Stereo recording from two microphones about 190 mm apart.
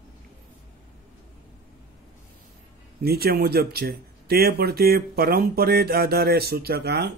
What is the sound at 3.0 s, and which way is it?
Speech, 55° right (ahead or behind).